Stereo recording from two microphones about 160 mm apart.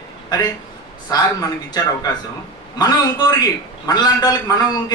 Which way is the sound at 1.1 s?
25° left (ahead or behind).